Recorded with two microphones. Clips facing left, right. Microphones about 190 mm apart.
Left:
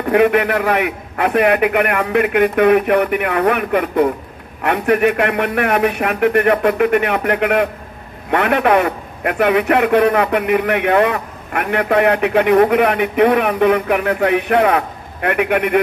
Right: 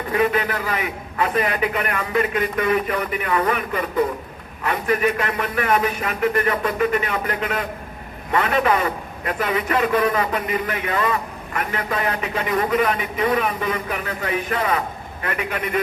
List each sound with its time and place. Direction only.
0.1 s a man's voice: 65° left (ahead or behind)